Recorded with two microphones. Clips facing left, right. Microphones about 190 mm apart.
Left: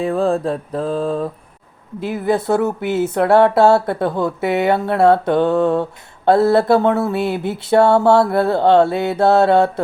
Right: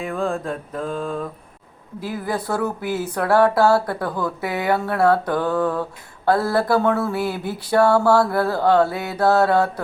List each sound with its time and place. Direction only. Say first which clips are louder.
0.0 s mantra: left 7 dB; 35° left (ahead or behind)
2.0 s speech: left 7 dB; 25° left (ahead or behind)